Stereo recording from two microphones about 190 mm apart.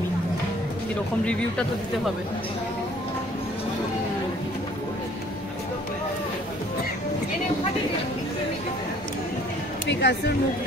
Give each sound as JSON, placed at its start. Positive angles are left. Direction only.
{"t": 1.2, "sound": "speech", "side_deg": 5}
{"t": 9.8, "sound": "speech", "side_deg": 65}